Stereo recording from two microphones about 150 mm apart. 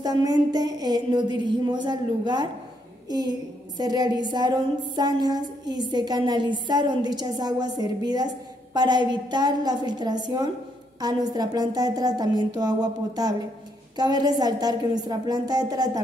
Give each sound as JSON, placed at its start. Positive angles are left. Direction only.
{"t": 0.0, "sound": "a woman's voice", "side_deg": -25}